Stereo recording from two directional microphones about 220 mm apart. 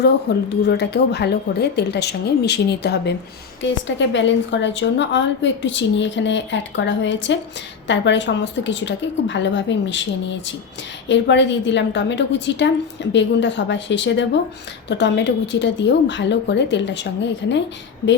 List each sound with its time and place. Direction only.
0.3 s a woman's voice: 50° left (ahead or behind)